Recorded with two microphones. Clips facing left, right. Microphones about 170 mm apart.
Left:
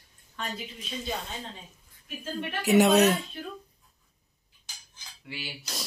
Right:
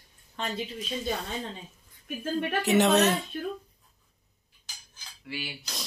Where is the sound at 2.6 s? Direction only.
10° left (ahead or behind).